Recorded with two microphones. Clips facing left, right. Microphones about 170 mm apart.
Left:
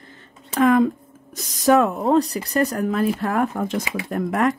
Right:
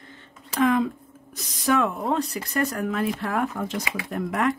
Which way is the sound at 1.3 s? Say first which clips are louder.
Left 7 dB; 40° left (ahead or behind).